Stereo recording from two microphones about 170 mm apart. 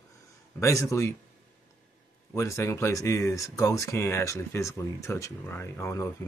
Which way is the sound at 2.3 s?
15° left (ahead or behind).